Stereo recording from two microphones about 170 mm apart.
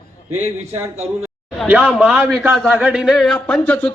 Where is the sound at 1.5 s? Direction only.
5° right (ahead or behind).